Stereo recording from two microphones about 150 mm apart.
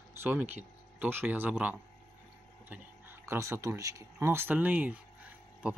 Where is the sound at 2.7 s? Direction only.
15° right (ahead or behind).